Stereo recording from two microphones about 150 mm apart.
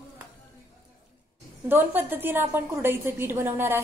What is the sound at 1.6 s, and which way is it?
A woman's voice, 15° right (ahead or behind).